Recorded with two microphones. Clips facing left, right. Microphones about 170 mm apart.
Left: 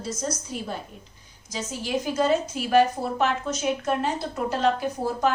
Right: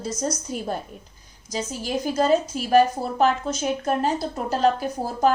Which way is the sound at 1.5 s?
40° right (ahead or behind).